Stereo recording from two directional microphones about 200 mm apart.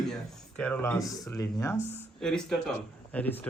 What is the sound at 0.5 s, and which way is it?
Speech, 5° left (ahead or behind).